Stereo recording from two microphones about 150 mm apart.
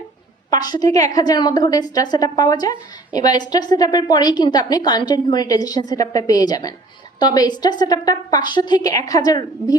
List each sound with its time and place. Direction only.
0.5 s a woman's voice: 25° left (ahead or behind)